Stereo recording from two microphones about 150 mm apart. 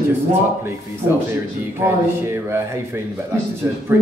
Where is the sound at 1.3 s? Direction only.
15° right (ahead or behind).